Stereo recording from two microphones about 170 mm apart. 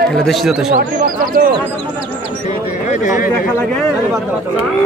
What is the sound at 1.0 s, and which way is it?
Speech, 55° right (ahead or behind).